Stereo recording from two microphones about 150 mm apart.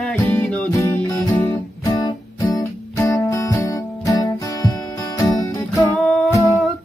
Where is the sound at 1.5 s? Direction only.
25° left (ahead or behind); by 6.3 s 5° left (ahead or behind).